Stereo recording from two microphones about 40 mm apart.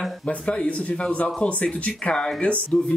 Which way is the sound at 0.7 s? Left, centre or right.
Left.